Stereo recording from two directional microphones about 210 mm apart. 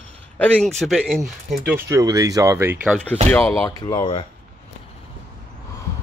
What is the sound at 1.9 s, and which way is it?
Speech, 15° right (ahead or behind).